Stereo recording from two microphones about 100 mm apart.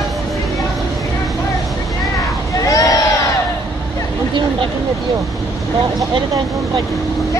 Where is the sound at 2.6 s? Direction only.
35° left (ahead or behind).